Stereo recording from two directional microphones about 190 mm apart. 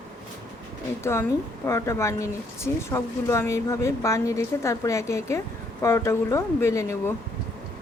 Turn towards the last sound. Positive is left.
turn(degrees=15)  # may be behind; listen again after turning